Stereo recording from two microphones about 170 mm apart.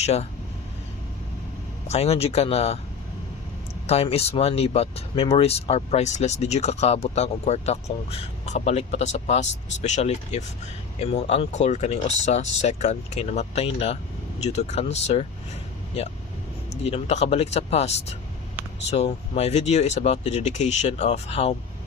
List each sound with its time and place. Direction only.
0.0 s speech: 40° left (ahead or behind)
1.9 s speech: 35° left (ahead or behind)
3.8 s speech: 35° left (ahead or behind)
16.8 s speech: 35° left (ahead or behind)